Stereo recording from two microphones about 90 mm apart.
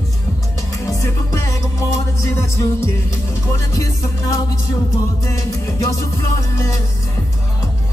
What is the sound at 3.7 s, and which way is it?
Music, 35° left (ahead or behind).